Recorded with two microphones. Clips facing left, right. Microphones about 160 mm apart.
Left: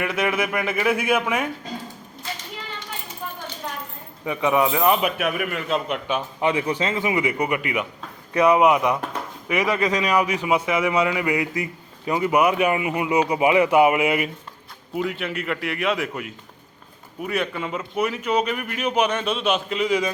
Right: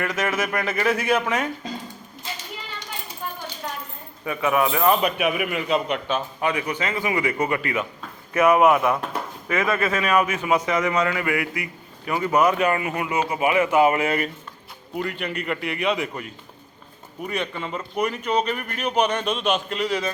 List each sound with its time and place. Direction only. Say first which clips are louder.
0.0 s a man's voice: left 1 dB; 15° left (ahead or behind)
4.3 s speech: left 1 dB; 20° left (ahead or behind); by 6.0 s centre (ahead or behind)
6.1 s a man's voice: left 2 dB; 15° left (ahead or behind)